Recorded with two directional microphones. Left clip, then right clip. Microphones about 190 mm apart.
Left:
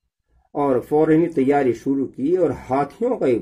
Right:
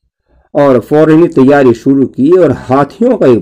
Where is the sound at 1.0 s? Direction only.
40° right (ahead or behind).